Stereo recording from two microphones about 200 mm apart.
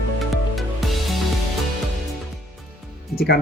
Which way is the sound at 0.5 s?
Centre (ahead or behind).